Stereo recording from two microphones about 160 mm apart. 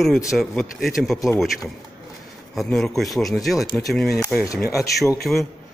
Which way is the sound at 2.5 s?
Centre (ahead or behind).